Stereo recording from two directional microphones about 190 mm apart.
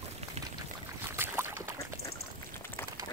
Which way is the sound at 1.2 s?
10° right (ahead or behind).